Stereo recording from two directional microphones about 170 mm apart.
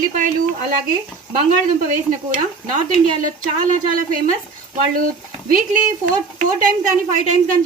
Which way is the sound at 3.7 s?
50° right (ahead or behind).